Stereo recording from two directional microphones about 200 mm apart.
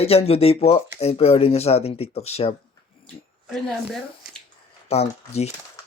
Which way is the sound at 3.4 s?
Centre (ahead or behind).